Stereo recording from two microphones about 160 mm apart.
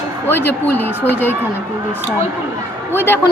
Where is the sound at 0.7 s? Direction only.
10° left (ahead or behind).